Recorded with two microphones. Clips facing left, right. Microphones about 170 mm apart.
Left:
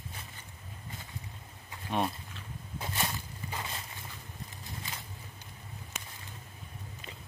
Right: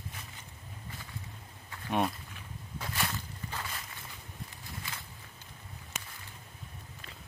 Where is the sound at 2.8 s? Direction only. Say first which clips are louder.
Even; 20° left (ahead or behind).